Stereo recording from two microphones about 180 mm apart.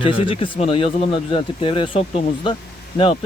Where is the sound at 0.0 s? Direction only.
30° left (ahead or behind).